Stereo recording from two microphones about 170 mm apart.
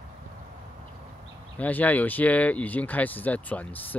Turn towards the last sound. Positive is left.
turn(degrees=10)  # may be behind; listen again after turning